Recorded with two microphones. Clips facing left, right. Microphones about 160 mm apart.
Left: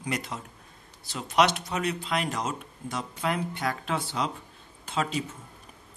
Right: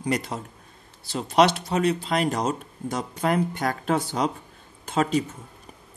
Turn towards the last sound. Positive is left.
turn(degrees=-45)  # may be behind; listen again after turning